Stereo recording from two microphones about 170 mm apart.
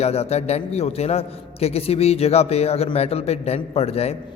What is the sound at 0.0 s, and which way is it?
A man's voice, 40° left (ahead or behind).